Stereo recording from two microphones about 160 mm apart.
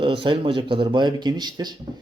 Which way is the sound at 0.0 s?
30° right (ahead or behind).